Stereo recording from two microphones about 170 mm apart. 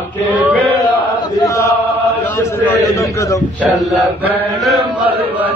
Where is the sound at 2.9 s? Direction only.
20° left (ahead or behind).